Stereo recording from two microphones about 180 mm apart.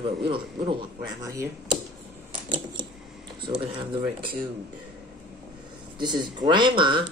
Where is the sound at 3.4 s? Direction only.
30° right (ahead or behind).